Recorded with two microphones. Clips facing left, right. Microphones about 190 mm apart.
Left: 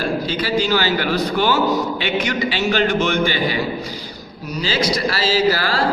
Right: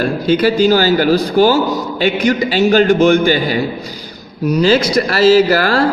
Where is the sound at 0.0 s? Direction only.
50° right (ahead or behind).